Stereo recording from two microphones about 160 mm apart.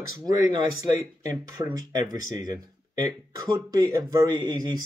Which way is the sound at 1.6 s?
25° right (ahead or behind).